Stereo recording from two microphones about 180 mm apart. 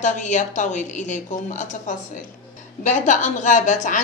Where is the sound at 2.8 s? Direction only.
45° left (ahead or behind).